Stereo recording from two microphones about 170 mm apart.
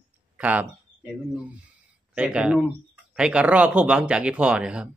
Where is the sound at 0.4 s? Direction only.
10° right (ahead or behind).